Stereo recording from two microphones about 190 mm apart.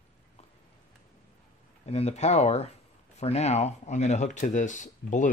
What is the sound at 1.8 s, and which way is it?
Speech, 35° left (ahead or behind).